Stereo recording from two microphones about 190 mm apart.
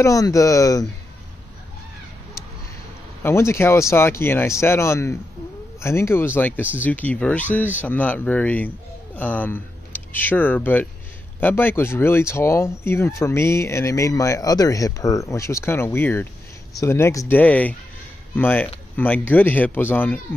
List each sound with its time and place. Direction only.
0.0 s speech: 15° left (ahead or behind)
3.2 s speech: 15° left (ahead or behind)